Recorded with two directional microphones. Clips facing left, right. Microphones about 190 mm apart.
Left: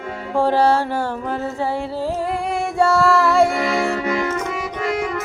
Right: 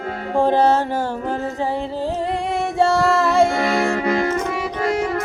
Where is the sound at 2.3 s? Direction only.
25° right (ahead or behind).